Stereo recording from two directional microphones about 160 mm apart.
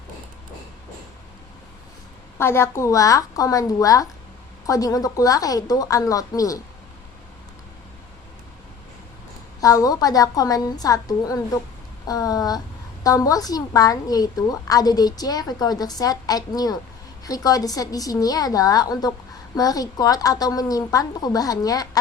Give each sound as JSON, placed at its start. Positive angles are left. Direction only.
{"t": 2.4, "sound": "a woman's voice", "side_deg": 15}
{"t": 9.6, "sound": "a woman's voice", "side_deg": 20}